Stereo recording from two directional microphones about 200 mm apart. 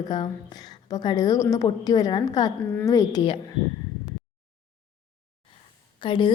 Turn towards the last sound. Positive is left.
turn(degrees=25)  # may be behind; listen again after turning